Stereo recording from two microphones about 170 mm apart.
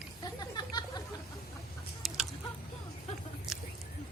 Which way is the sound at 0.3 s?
25° left (ahead or behind).